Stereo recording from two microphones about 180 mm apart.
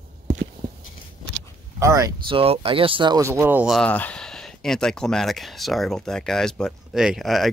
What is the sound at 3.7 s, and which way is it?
Speech, 10° left (ahead or behind).